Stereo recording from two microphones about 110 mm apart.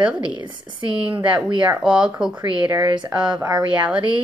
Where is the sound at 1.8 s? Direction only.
10° right (ahead or behind).